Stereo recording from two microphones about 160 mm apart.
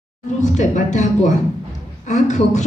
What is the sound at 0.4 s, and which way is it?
A woman's voice, 50° left (ahead or behind).